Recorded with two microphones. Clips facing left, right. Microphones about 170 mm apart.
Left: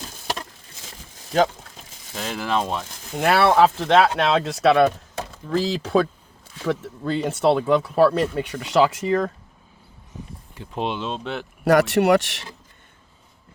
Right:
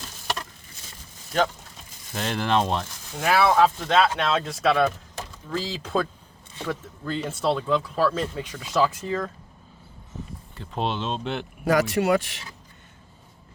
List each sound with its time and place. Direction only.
2.1 s speech: centre (ahead or behind)
3.2 s speech: 65° left (ahead or behind)
10.5 s speech: 10° left (ahead or behind)
11.6 s speech: 70° left (ahead or behind)